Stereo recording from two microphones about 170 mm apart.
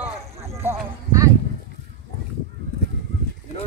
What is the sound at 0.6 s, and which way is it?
Clip-clop, 15° right (ahead or behind).